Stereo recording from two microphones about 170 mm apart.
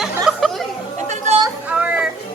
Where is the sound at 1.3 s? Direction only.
40° right (ahead or behind).